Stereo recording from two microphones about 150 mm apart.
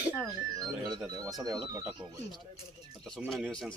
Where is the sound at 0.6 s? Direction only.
25° right (ahead or behind).